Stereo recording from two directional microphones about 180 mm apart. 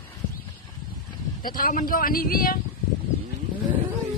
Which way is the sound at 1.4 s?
50° left (ahead or behind).